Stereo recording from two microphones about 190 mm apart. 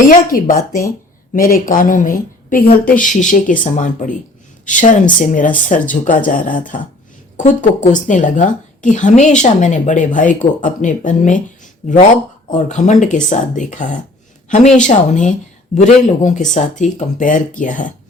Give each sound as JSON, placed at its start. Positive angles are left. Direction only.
{"t": 0.1, "sound": "a woman's voice", "side_deg": 45}